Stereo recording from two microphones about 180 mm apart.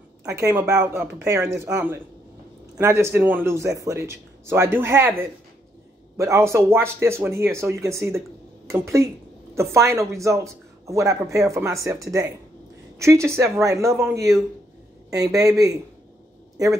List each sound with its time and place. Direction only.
0.3 s speech: 15° right (ahead or behind)
15.0 s speech: 20° right (ahead or behind)